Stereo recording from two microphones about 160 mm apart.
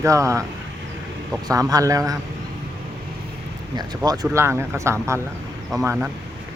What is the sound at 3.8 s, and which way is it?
Speech, 25° right (ahead or behind).